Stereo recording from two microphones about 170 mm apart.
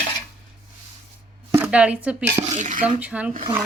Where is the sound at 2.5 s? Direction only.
45° right (ahead or behind).